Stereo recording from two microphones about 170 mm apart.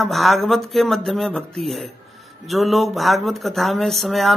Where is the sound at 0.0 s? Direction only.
Centre (ahead or behind).